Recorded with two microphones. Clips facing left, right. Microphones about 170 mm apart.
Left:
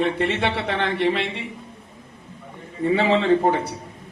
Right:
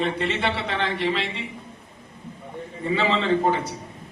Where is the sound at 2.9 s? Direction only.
60° left (ahead or behind).